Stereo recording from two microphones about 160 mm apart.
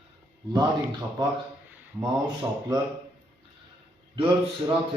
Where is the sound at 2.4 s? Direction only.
20° right (ahead or behind).